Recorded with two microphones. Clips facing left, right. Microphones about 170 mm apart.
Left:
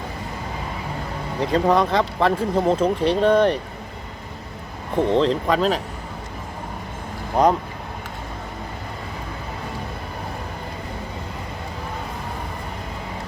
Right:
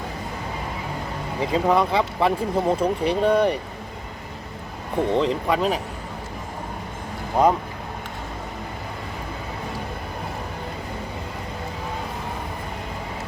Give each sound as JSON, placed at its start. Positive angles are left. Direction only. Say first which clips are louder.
{"t": 1.4, "sound": "speech", "louder": "left 2 dB", "side_deg": -5}
{"t": 4.9, "sound": "speech", "louder": "left 3 dB", "side_deg": -5}